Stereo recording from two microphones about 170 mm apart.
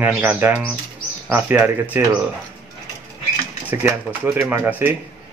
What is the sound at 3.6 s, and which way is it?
Speech, 10° right (ahead or behind).